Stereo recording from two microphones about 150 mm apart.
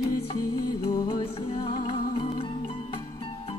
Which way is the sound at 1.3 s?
40° left (ahead or behind).